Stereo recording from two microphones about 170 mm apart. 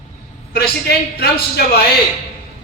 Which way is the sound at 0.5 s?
65° left (ahead or behind).